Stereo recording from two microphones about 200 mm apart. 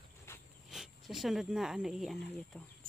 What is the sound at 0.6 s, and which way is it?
Speech, centre (ahead or behind).